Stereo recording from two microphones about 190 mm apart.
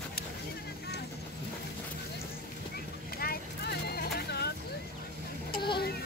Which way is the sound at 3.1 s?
55° left (ahead or behind).